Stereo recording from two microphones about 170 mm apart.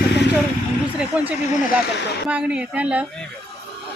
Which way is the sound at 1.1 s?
5° right (ahead or behind).